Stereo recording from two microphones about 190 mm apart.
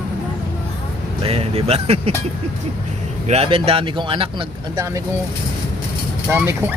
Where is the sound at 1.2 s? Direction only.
30° right (ahead or behind).